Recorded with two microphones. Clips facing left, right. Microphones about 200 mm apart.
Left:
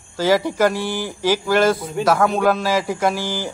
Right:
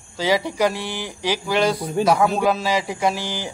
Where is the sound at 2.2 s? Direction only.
Centre (ahead or behind).